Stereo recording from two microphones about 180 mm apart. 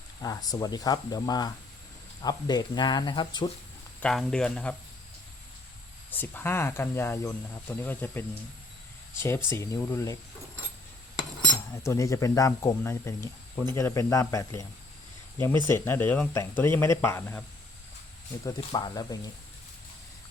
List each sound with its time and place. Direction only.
0.2 s speech: 20° left (ahead or behind)
4.0 s speech: 5° left (ahead or behind)
6.1 s speech: 10° left (ahead or behind)
9.5 s speech: 15° left (ahead or behind)
11.7 s speech: 15° left (ahead or behind)
18.4 s speech: 20° left (ahead or behind)